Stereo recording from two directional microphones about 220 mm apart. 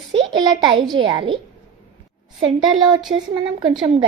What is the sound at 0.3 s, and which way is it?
A woman's voice, 20° right (ahead or behind).